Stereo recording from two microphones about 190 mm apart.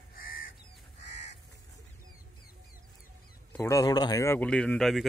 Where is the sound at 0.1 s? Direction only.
50° left (ahead or behind).